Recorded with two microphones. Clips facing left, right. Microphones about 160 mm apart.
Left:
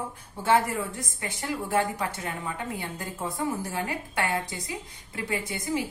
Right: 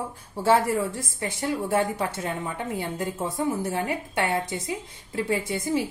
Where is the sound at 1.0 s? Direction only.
25° right (ahead or behind).